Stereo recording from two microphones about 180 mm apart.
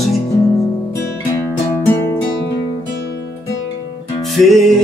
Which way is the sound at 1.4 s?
15° left (ahead or behind).